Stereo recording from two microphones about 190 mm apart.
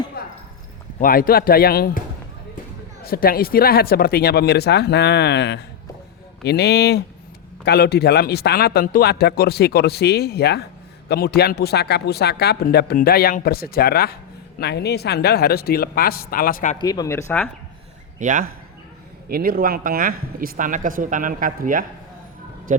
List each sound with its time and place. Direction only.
0.2 s clip-clop: 55° left (ahead or behind)
0.9 s a man's voice: 45° left (ahead or behind)
3.0 s a man's voice: 50° left (ahead or behind)
16.7 s speech: 20° left (ahead or behind)
18.2 s speech: 45° right (ahead or behind)